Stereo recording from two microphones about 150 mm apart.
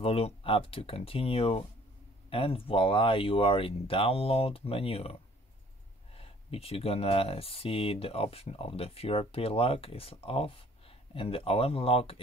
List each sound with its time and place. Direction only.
0.0 s speech: 40° left (ahead or behind)
6.1 s speech: 40° left (ahead or behind)